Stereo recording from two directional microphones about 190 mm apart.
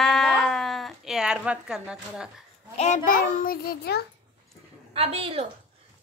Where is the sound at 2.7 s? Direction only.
35° left (ahead or behind); by 4.0 s 55° left (ahead or behind).